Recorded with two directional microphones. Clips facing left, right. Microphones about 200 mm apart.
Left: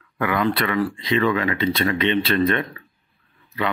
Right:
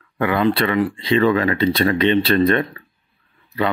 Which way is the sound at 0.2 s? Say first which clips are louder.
Right 4 dB; 30° right (ahead or behind).